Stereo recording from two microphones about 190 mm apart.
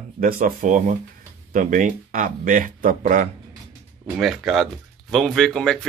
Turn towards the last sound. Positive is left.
turn(degrees=5)  # may be behind; listen again after turning